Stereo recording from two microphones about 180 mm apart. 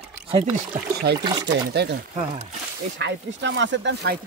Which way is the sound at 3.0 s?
85° right.